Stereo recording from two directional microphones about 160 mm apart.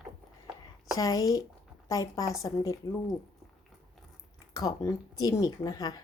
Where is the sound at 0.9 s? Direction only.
20° left (ahead or behind).